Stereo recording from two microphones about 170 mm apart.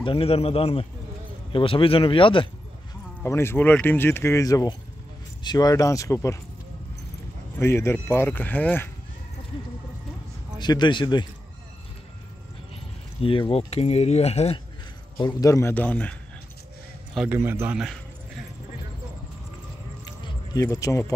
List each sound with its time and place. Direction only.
0.0 s speech: 35° left (ahead or behind)
3.2 s speech: 15° left (ahead or behind)
7.5 s speech: 15° left (ahead or behind)
10.6 s speech: 25° left (ahead or behind)
13.2 s speech: 35° left (ahead or behind)
15.1 s speech: 25° left (ahead or behind)
17.1 s a man's voice: 5° right (ahead or behind)
17.4 s a man's voice: 15° right (ahead or behind)
20.2 s speech: 20° left (ahead or behind)